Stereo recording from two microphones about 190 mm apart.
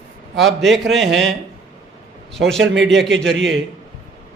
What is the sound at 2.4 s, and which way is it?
Speech, 90° right.